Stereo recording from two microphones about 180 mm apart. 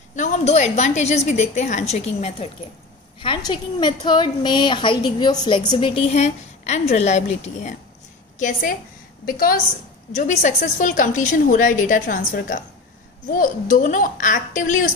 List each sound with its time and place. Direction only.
0.1 s a woman's voice: 40° left (ahead or behind)
10.1 s a woman's voice: 40° left (ahead or behind)